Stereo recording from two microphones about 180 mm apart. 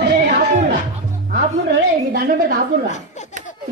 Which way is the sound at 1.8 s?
55° right (ahead or behind).